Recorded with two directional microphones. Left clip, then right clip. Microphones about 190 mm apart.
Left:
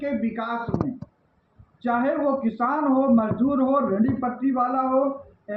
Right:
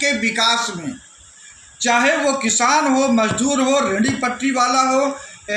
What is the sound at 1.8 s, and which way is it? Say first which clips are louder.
Speech: right 7 dB; 40° right (ahead or behind).